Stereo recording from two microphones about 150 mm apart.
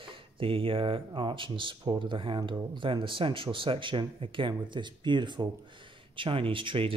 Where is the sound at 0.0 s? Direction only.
35° right (ahead or behind).